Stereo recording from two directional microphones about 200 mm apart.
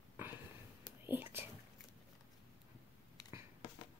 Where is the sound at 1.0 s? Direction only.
10° right (ahead or behind).